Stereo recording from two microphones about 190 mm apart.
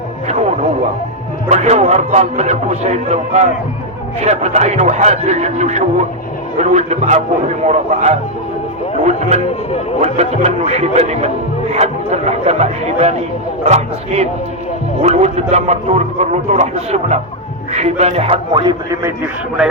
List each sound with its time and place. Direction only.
0.3 s radio: 35° right (ahead or behind)
1.5 s a man's voice: 35° right (ahead or behind)
9.3 s a man's voice: 35° right (ahead or behind); by 19.3 s 15° right (ahead or behind)